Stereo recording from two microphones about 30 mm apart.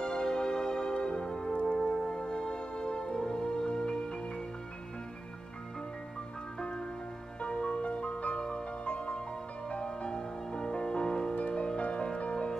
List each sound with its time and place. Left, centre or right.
0.0 s music: left
1.2 s music: centre
1.5 s music: left
2.0 s music: left
7.4 s music: left
8.4 s music: left
9.8 s music: left
11.3 s music: left